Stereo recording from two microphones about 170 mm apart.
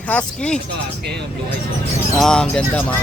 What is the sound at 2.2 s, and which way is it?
Speech, 5° left (ahead or behind).